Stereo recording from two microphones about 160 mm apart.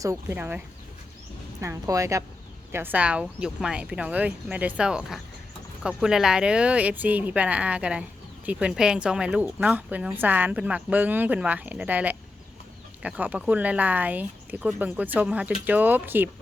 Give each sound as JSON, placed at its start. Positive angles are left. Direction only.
{"t": 0.0, "sound": "a woman's voice", "side_deg": -20}
{"t": 1.6, "sound": "a woman's voice", "side_deg": -20}